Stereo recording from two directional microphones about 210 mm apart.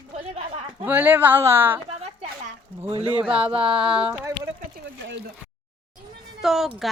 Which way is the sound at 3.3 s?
25° right (ahead or behind).